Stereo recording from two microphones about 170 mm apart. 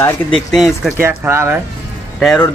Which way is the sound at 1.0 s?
15° right (ahead or behind).